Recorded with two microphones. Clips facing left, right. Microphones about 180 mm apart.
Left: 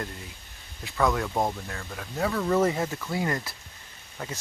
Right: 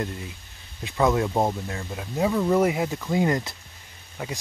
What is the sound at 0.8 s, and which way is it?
Speech, 20° right (ahead or behind).